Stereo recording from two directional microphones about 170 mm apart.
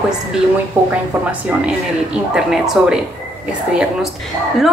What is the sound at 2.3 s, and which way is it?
Speech, 5° right (ahead or behind).